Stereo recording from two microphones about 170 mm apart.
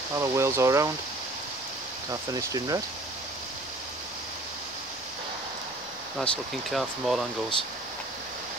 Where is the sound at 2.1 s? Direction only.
20° right (ahead or behind).